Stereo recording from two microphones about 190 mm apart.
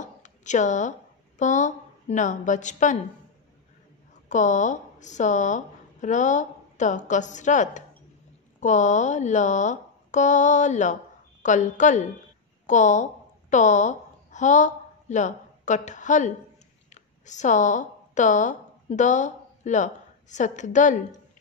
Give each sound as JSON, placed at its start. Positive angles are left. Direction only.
{"t": 0.0, "sound": "a sound", "side_deg": 40}
{"t": 1.4, "sound": "speech", "side_deg": 40}
{"t": 4.3, "sound": "a woman's voice", "side_deg": 40}